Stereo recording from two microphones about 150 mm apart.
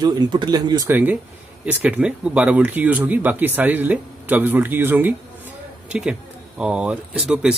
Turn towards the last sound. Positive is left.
turn(degrees=-5)  # may be behind; listen again after turning